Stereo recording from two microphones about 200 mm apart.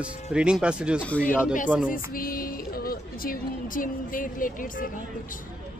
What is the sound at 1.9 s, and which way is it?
Speech, 45° left (ahead or behind).